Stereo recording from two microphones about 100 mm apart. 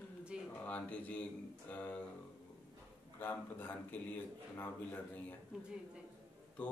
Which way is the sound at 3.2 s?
20° left (ahead or behind).